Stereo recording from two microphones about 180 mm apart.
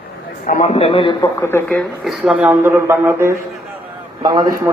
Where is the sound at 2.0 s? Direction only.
Centre (ahead or behind).